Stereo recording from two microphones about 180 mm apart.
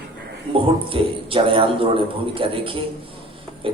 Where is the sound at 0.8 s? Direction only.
30° right (ahead or behind).